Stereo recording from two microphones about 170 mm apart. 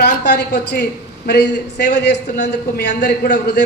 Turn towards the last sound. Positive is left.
turn(degrees=75)  # may be behind; listen again after turning